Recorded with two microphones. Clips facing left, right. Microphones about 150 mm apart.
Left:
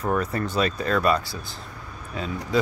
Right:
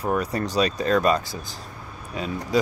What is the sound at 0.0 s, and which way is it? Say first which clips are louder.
Speech: even; 15° right (ahead or behind).